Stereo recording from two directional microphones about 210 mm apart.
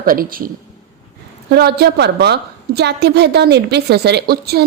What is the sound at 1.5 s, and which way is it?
A woman's voice, 50° right (ahead or behind).